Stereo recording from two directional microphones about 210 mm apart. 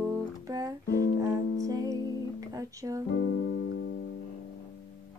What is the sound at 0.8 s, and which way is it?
Music, 45° left (ahead or behind).